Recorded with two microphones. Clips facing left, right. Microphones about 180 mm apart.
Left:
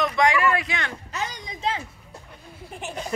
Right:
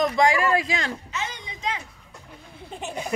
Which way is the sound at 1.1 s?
35° left (ahead or behind).